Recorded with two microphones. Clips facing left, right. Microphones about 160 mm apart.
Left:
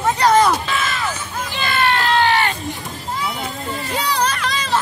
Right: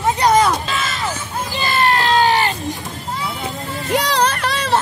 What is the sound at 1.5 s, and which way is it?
Run, 35° right (ahead or behind).